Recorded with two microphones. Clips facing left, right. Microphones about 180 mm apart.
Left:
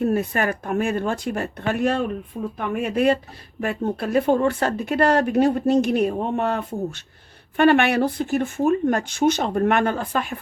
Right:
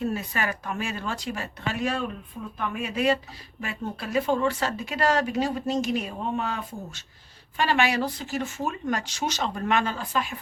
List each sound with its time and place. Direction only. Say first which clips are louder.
0.0 s speech: left 7 dB; 55° left (ahead or behind)